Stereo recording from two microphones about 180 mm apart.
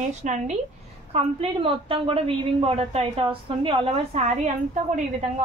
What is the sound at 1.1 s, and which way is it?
A woman's voice, 30° right (ahead or behind).